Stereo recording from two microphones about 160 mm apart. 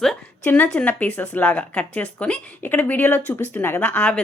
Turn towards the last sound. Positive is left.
turn(degrees=10)  # may be behind; listen again after turning